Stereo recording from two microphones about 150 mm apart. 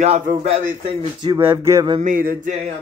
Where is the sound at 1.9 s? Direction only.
60° right (ahead or behind).